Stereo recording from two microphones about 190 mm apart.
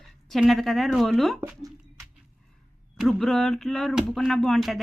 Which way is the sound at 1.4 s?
15° right (ahead or behind).